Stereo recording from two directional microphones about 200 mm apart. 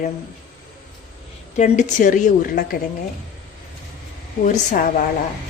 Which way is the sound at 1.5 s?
35° left (ahead or behind).